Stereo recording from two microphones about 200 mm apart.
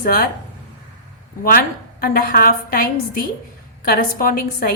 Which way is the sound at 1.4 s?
50° left (ahead or behind).